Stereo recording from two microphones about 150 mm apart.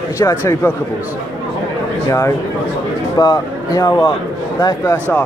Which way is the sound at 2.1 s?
20° left (ahead or behind).